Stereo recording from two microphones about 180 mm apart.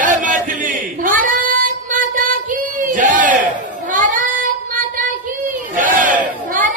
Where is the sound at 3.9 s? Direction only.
50° right (ahead or behind).